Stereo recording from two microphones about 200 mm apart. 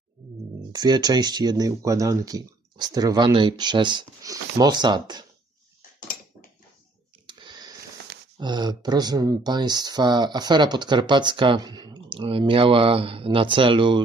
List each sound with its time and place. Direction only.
0.7 s speech: 20° right (ahead or behind)
7.3 s a sound: 25° right (ahead or behind)
8.4 s speech: 20° right (ahead or behind)